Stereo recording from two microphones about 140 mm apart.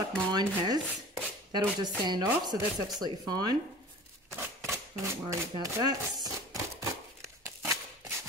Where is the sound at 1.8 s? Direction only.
30° right (ahead or behind).